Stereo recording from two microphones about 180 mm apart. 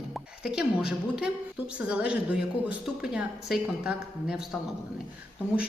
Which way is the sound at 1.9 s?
5° right (ahead or behind).